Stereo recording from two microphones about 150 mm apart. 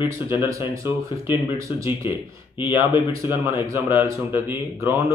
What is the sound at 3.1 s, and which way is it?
Speech, 15° right (ahead or behind).